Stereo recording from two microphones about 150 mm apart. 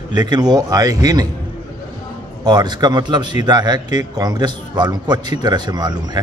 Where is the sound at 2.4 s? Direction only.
30° right (ahead or behind).